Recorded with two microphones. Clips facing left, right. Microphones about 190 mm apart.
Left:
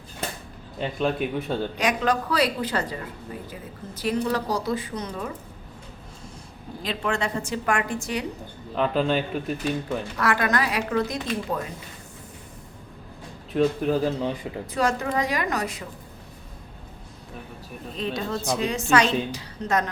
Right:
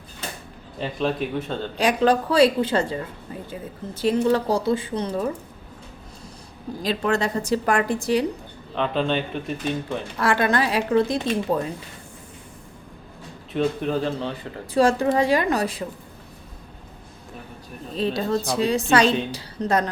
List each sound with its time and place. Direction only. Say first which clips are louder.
0.8 s speech: even; centre (ahead or behind)
1.8 s speech: right 7 dB; 30° right (ahead or behind)
6.8 s a woman's voice: right 4 dB; 40° right (ahead or behind)
8.7 s speech: even; 5° left (ahead or behind)
10.2 s speech: right 4 dB; 30° right (ahead or behind)
13.5 s speech: left 1 dB; 5° left (ahead or behind)
14.7 s speech: right 6 dB; 30° right (ahead or behind)
17.9 s a woman's voice: right 6 dB; 35° right (ahead or behind)